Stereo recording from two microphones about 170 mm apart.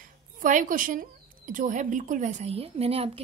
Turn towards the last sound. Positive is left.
turn(degrees=-35)  # may be behind; listen again after turning